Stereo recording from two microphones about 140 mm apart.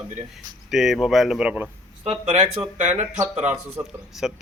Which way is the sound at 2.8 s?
55° right (ahead or behind).